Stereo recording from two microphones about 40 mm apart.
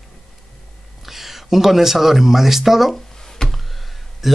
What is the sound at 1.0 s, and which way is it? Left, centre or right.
Speech, centre.